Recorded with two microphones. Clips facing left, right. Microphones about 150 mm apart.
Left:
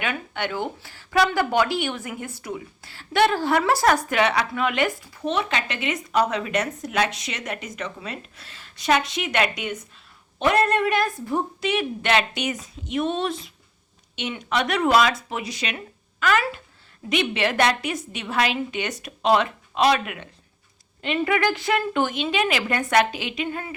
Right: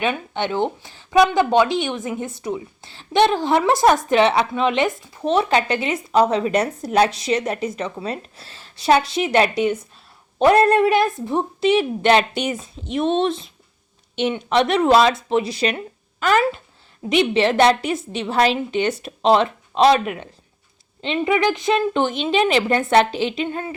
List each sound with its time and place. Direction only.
0.0 s a woman's voice: 25° right (ahead or behind)
21.0 s speech: 20° right (ahead or behind)